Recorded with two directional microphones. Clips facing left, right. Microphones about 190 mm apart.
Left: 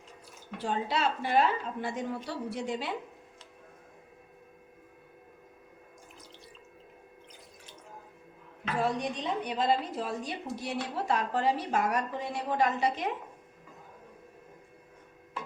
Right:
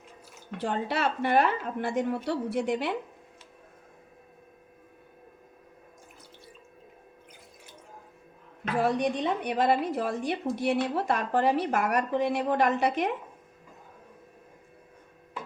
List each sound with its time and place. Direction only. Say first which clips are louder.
0.6 s a woman's voice: right 2 dB; 60° right (ahead or behind)
8.8 s a woman's voice: right 5 dB; 65° right (ahead or behind)